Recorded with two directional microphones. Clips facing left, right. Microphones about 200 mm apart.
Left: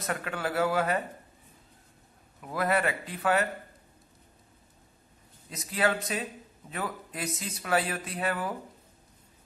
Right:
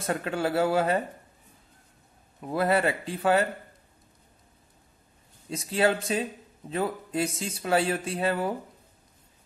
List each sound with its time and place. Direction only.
0.0 s speech: 30° right (ahead or behind)
2.4 s speech: 30° right (ahead or behind)
5.5 s speech: 30° right (ahead or behind)